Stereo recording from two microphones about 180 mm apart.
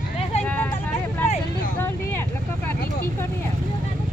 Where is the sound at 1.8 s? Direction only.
10° left (ahead or behind).